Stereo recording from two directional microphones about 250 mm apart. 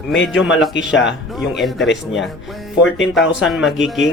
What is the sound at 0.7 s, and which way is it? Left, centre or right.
Speech, left.